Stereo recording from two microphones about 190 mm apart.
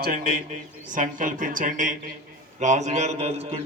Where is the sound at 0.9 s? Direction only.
45° right (ahead or behind).